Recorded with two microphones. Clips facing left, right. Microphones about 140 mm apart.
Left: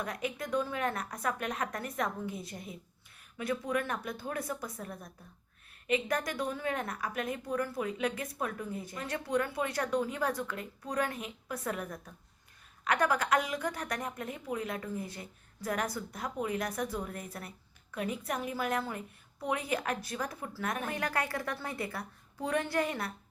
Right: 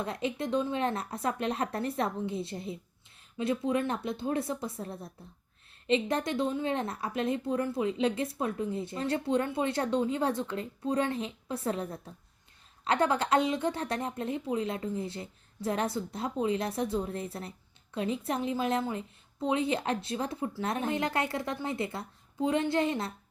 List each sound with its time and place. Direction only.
0.0 s a woman's voice: 25° right (ahead or behind)